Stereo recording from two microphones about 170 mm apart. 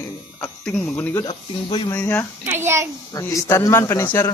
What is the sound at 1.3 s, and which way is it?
Speech, 30° left (ahead or behind).